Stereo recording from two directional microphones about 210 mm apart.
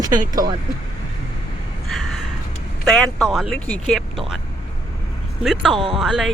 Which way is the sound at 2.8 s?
Centre (ahead or behind).